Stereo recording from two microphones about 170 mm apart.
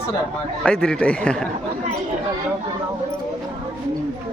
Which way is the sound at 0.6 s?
5° left (ahead or behind).